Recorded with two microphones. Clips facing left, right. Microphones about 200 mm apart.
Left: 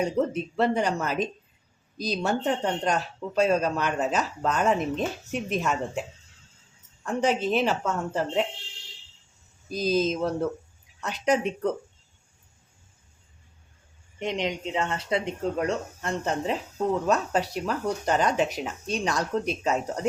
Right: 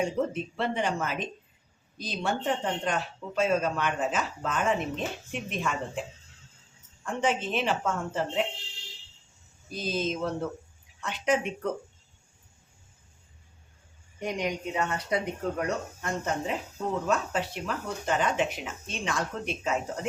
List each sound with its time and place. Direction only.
0.0 s speech: 40° left (ahead or behind)
7.0 s speech: 40° left (ahead or behind)
9.7 s speech: 40° left (ahead or behind)
14.2 s speech: 25° left (ahead or behind)